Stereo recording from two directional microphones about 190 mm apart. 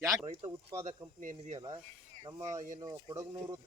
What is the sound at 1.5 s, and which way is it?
Speech, 25° right (ahead or behind).